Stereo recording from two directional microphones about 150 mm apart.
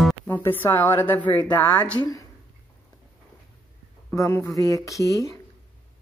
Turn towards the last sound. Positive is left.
turn(degrees=20)  # may be behind; listen again after turning